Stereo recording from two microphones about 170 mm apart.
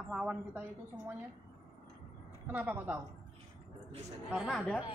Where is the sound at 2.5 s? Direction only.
10° right (ahead or behind).